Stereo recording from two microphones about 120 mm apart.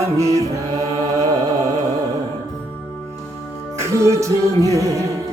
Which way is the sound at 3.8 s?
25° right (ahead or behind).